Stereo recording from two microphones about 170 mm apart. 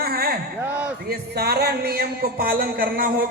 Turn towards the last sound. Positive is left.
turn(degrees=-60)  # may be behind; listen again after turning